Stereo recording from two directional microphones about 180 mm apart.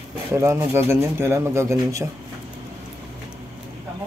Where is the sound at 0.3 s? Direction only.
15° right (ahead or behind).